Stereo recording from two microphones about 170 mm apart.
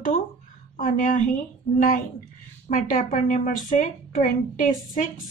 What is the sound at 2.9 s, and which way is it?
A woman's voice, 50° left (ahead or behind).